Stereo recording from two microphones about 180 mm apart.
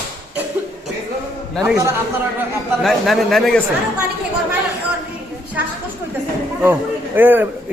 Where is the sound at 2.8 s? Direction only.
Centre (ahead or behind).